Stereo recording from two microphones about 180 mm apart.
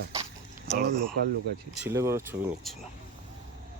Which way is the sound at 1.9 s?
15° right (ahead or behind).